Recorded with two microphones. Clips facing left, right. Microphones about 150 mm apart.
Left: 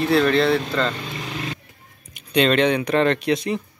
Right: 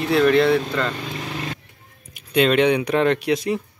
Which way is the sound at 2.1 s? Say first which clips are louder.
Right 1 dB; 5° right (ahead or behind).